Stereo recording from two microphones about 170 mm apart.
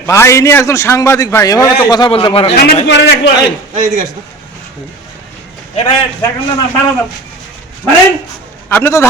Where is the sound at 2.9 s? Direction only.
90° left.